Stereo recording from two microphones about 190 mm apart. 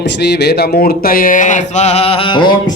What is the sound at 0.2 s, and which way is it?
Speech, 60° left (ahead or behind).